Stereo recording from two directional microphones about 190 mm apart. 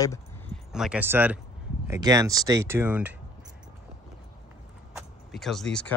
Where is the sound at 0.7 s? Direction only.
5° right (ahead or behind).